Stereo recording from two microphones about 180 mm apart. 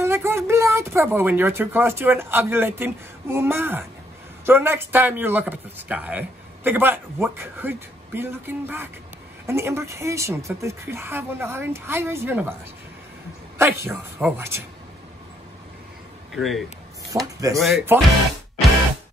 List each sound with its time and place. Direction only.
0.0 s speech: 15° right (ahead or behind)
13.6 s speech: 15° right (ahead or behind)
16.3 s speech: centre (ahead or behind)
17.1 s speech: 20° right (ahead or behind)
17.6 s speech: centre (ahead or behind)